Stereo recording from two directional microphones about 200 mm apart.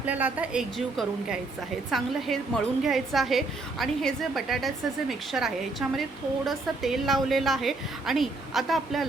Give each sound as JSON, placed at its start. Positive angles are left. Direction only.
{"t": 0.0, "sound": "a woman's voice", "side_deg": -5}